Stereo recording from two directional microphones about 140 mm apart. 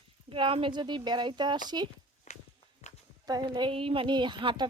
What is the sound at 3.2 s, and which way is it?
Speech, 30° right (ahead or behind).